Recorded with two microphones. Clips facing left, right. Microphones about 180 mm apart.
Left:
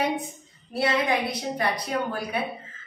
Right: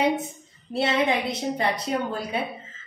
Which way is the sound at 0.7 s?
25° right (ahead or behind).